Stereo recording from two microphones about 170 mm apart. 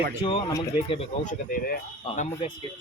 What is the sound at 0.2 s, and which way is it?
Speech, 30° left (ahead or behind).